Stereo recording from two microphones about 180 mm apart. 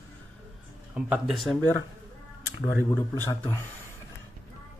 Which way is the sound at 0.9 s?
5° right (ahead or behind).